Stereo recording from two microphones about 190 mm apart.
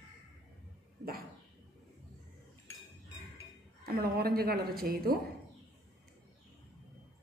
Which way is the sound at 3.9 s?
55° right (ahead or behind).